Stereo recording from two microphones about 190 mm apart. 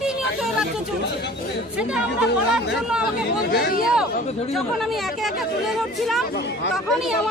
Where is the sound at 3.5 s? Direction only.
55° left (ahead or behind).